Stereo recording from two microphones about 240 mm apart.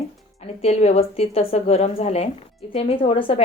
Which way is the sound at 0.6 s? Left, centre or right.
Left.